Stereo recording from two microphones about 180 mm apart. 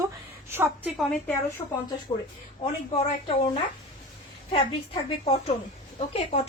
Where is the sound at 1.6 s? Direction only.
25° left (ahead or behind).